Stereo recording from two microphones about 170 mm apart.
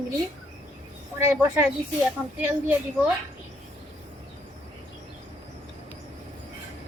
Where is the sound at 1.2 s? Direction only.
15° right (ahead or behind).